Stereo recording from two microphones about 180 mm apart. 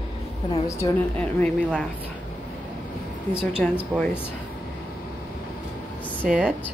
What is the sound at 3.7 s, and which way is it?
Speech, 10° left (ahead or behind).